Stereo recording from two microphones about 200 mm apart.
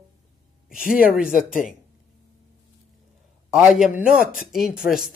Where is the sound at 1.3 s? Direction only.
40° left (ahead or behind).